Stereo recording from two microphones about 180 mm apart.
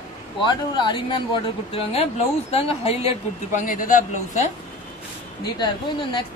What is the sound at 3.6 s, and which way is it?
Speech, 50° left (ahead or behind).